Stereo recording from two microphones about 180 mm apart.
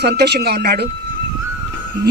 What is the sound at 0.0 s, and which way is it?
Speech, 65° right (ahead or behind).